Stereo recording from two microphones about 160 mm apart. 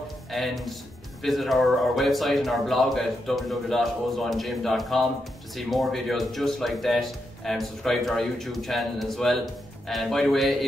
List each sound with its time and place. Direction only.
0.3 s speech: centre (ahead or behind)